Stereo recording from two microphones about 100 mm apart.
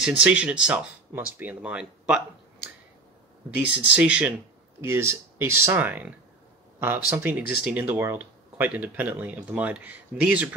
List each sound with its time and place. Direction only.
0.0 s speech: 10° right (ahead or behind)
3.5 s speech: 15° right (ahead or behind)
4.8 s speech: 25° right (ahead or behind)